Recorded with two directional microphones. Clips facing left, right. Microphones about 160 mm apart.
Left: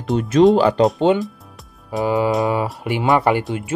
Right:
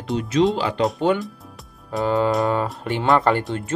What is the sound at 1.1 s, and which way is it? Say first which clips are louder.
Speech: left 4 dB; 25° left (ahead or behind).